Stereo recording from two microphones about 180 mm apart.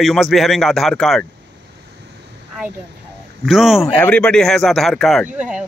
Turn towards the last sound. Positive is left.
turn(degrees=-5)  # may be behind; listen again after turning